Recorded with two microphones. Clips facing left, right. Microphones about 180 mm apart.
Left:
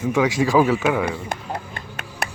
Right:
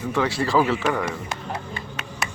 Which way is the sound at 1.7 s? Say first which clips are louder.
Right 1 dB; 60° left (ahead or behind).